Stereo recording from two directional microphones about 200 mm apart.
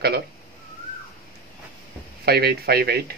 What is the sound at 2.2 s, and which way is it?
Speech, 50° right (ahead or behind).